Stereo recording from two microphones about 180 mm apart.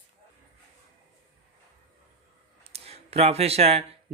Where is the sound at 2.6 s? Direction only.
35° right (ahead or behind).